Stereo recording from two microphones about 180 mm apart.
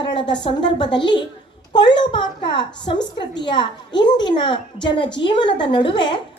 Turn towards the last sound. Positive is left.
turn(degrees=25)  # may be behind; listen again after turning